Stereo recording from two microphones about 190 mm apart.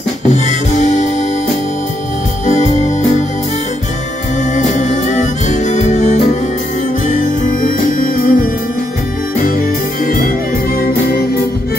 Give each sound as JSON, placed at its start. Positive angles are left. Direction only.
{"t": 0.3, "sound": "music", "side_deg": 40}
{"t": 2.4, "sound": "music", "side_deg": 35}
{"t": 4.6, "sound": "music", "side_deg": 40}
{"t": 10.0, "sound": "music", "side_deg": 50}